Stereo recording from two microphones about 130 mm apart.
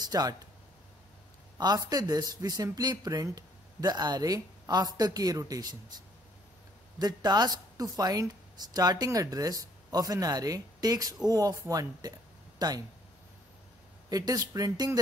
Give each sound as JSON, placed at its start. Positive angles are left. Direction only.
{"t": 0.1, "sound": "speech", "side_deg": -30}
{"t": 1.6, "sound": "speech", "side_deg": -30}
{"t": 14.0, "sound": "speech", "side_deg": -30}